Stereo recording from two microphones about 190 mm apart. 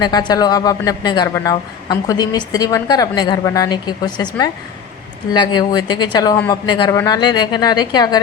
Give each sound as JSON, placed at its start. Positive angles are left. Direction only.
{"t": 0.0, "sound": "a man's voice", "side_deg": 20}